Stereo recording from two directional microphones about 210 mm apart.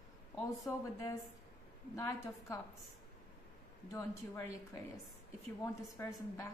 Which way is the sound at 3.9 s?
15° left (ahead or behind).